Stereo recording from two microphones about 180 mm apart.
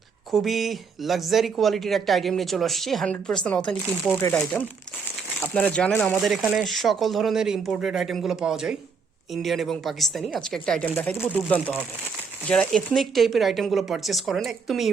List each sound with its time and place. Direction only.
0.3 s speech: centre (ahead or behind)